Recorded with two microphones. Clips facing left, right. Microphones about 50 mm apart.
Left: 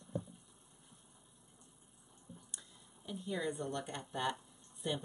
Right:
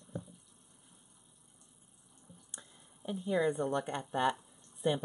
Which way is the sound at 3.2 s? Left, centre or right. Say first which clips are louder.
Right 8 dB; right.